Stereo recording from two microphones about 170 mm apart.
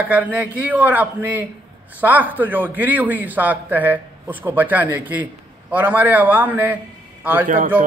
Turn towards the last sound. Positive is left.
turn(degrees=-55)  # may be behind; listen again after turning